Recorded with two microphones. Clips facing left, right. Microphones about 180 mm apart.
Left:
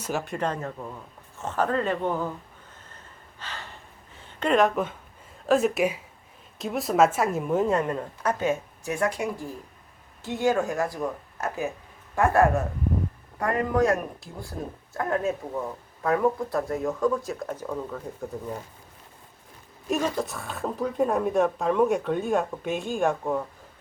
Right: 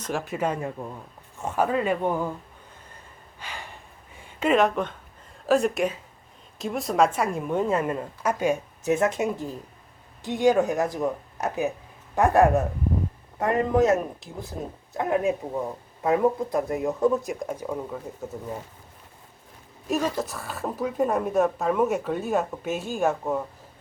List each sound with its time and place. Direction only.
0.0 s speech: centre (ahead or behind)
3.4 s gasp: 10° right (ahead or behind)
4.2 s speech: 5° right (ahead or behind)
19.9 s speech: centre (ahead or behind)